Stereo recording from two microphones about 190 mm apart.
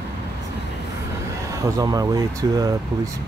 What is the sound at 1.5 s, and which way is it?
Speech, 15° right (ahead or behind).